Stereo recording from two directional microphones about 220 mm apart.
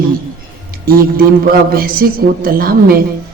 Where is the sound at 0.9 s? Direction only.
40° right (ahead or behind).